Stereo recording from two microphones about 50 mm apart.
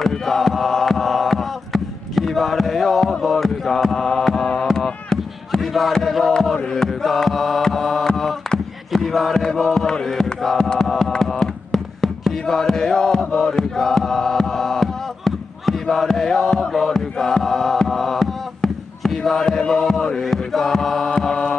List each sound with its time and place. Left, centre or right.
0.0 s chant: centre
4.7 s chop: centre
5.6 s a sound: centre
6.5 s chant: centre
21.2 s music: centre